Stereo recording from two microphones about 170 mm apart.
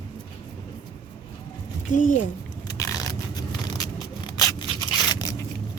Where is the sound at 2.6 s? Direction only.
20° left (ahead or behind).